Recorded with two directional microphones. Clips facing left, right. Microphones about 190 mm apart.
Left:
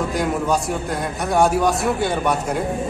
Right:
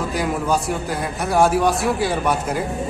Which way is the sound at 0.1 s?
Centre (ahead or behind).